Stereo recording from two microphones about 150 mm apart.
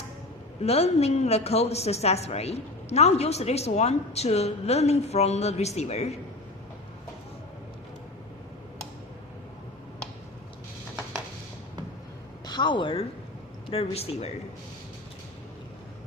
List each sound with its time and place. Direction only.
0.6 s a woman's voice: 45° left (ahead or behind)
12.5 s a woman's voice: 30° left (ahead or behind)